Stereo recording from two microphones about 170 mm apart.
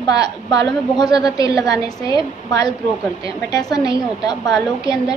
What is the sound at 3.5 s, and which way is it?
A woman's voice, 25° left (ahead or behind).